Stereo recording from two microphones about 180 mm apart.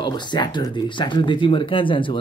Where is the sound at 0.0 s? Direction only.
25° left (ahead or behind).